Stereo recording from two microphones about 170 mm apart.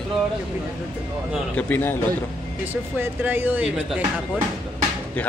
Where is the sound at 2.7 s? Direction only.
10° right (ahead or behind).